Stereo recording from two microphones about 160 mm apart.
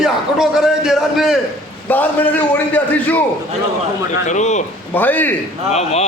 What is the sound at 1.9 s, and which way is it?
A man's voice, 10° left (ahead or behind).